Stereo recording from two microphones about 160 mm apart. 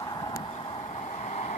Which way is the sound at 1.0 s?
45° left (ahead or behind).